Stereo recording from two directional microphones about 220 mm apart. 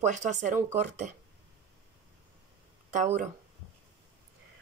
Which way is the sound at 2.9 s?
35° right (ahead or behind).